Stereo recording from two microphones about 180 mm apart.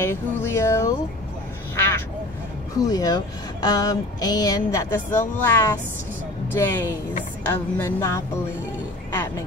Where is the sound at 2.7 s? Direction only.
20° left (ahead or behind).